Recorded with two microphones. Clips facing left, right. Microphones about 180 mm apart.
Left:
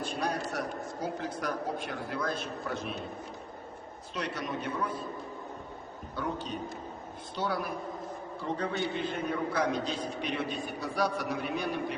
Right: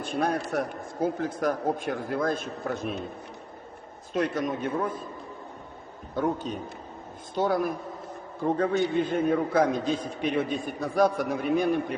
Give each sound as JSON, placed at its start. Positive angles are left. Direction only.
{"t": 0.0, "sound": "a man's voice", "side_deg": -55}
{"t": 4.1, "sound": "a man's voice", "side_deg": -50}
{"t": 6.1, "sound": "a man's voice", "side_deg": -50}